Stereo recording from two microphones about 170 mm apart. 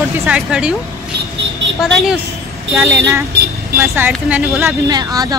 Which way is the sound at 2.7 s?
15° right (ahead or behind).